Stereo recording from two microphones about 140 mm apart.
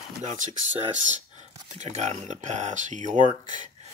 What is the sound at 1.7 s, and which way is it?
Speech, 60° right (ahead or behind).